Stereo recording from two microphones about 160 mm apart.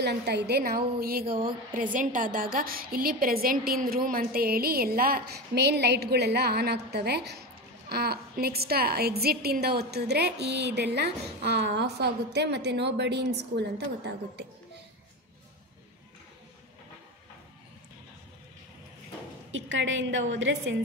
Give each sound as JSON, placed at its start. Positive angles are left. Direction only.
{"t": 0.0, "sound": "a woman's voice", "side_deg": -90}